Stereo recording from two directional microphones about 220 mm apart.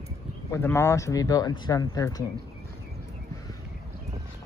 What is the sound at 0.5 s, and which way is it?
Speech, 10° left (ahead or behind).